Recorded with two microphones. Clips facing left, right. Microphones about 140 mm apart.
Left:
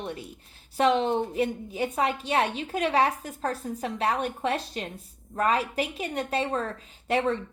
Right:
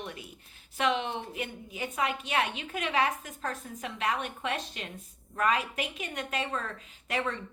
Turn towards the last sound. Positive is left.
turn(degrees=30)  # may be behind; listen again after turning